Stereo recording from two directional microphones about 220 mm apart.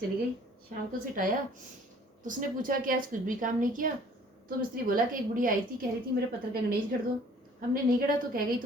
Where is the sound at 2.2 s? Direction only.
40° right (ahead or behind).